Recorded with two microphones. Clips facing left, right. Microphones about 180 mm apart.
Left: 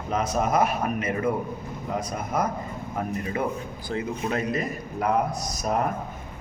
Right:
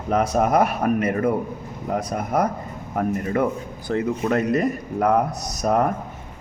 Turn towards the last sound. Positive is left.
turn(degrees=-55)  # may be behind; listen again after turning